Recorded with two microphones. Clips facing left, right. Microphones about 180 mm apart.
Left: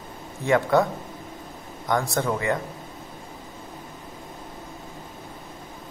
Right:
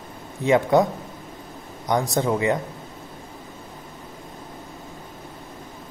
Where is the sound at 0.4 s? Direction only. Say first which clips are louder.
Right 3 dB; 20° right (ahead or behind).